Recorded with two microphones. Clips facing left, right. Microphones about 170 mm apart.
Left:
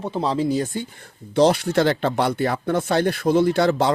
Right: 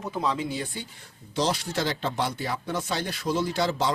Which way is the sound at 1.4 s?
60° left (ahead or behind).